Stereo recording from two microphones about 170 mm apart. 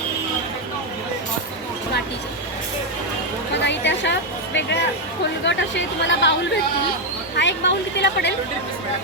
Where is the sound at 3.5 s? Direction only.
90° left.